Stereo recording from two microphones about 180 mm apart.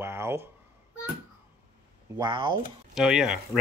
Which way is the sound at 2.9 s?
5° right (ahead or behind).